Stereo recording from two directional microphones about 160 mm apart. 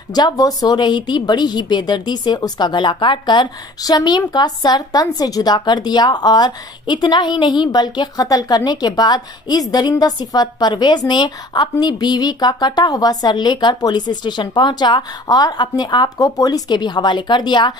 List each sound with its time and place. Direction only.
0.1 s a woman's voice: 25° left (ahead or behind)